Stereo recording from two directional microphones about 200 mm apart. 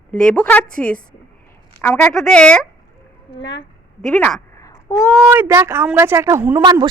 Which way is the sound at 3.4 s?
65° left (ahead or behind).